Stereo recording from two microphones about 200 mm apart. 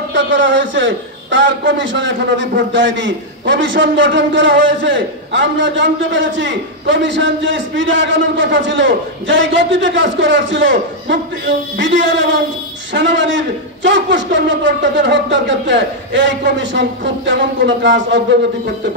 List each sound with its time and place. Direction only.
0.1 s a man's voice: 70° right (ahead or behind)